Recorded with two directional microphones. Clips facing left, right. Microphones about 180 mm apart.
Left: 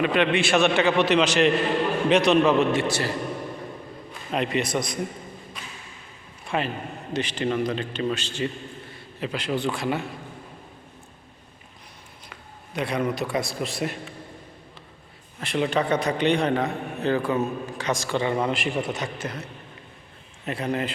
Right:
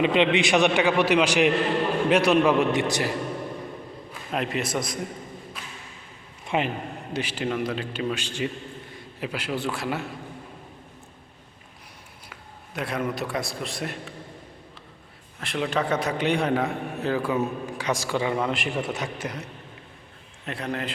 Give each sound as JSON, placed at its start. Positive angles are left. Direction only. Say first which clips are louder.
{"t": 0.0, "sound": "a man's voice", "louder": "right 1 dB", "side_deg": -20}
{"t": 4.1, "sound": "a man's voice", "louder": "left 3 dB", "side_deg": 0}
{"t": 6.4, "sound": "a sound", "louder": "right 1 dB", "side_deg": -20}
{"t": 7.1, "sound": "a man's voice", "louder": "left 3 dB", "side_deg": -10}
{"t": 12.3, "sound": "a man's voice", "louder": "left 3 dB", "side_deg": 0}
{"t": 15.4, "sound": "a man's voice", "louder": "left 2 dB", "side_deg": 0}
{"t": 20.4, "sound": "a man's voice", "louder": "left 4 dB", "side_deg": 0}